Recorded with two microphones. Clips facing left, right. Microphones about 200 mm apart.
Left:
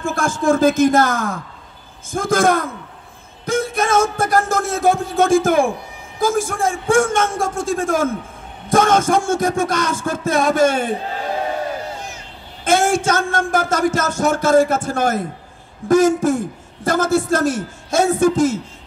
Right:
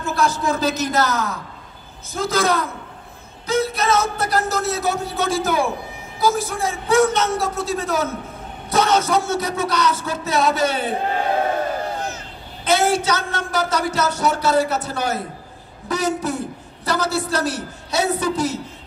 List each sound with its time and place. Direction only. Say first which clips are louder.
0.0 s speech: left 2 dB; 50° left (ahead or behind)
12.6 s speech: left 2 dB; 50° left (ahead or behind)